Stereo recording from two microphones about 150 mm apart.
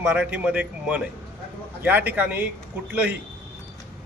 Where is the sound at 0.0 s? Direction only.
10° right (ahead or behind).